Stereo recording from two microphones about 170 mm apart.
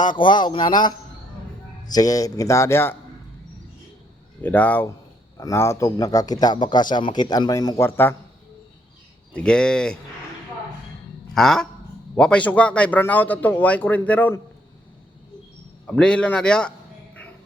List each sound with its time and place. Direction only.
0.2 s speech: 25° left (ahead or behind)
4.4 s a man's voice: 10° left (ahead or behind)
9.3 s a man's voice: 5° left (ahead or behind)
11.3 s a man's voice: 5° left (ahead or behind)
15.9 s a man's voice: 5° left (ahead or behind)